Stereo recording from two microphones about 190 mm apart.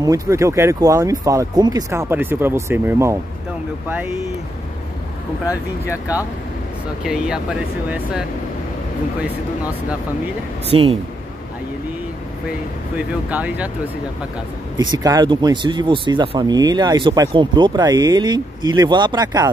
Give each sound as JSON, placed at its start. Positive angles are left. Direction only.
{"t": 0.0, "sound": "speech", "side_deg": -15}
{"t": 5.5, "sound": "speech", "side_deg": 15}
{"t": 7.1, "sound": "speech", "side_deg": -5}
{"t": 10.7, "sound": "speech", "side_deg": -30}
{"t": 12.9, "sound": "speech", "side_deg": -10}
{"t": 14.8, "sound": "speech", "side_deg": -20}